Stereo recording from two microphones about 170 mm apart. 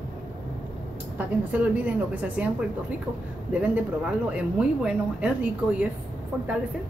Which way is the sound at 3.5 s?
10° right (ahead or behind).